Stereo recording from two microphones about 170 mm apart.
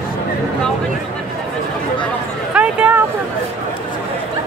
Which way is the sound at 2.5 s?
10° right (ahead or behind).